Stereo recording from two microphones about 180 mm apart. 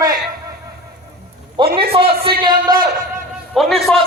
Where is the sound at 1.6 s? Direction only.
25° right (ahead or behind).